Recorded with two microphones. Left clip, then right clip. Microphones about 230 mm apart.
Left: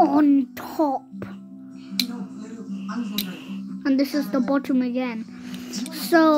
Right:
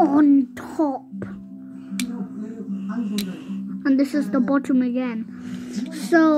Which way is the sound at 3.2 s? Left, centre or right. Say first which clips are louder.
Right 2 dB; centre.